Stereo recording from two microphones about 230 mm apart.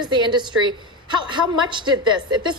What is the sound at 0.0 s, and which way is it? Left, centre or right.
Speech, centre.